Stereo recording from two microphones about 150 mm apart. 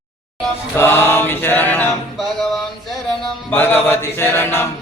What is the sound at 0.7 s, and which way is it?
Mantra, 15° left (ahead or behind).